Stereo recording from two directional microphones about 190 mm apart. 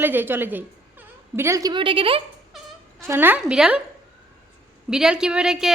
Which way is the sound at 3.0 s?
10° right (ahead or behind).